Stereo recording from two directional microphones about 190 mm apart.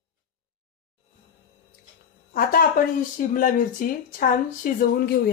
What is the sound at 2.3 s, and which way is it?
Speech, 50° left (ahead or behind).